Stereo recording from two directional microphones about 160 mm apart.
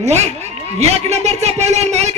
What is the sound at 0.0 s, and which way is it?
Speech, 45° right (ahead or behind).